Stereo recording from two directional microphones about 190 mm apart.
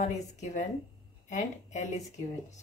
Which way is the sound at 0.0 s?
40° left (ahead or behind).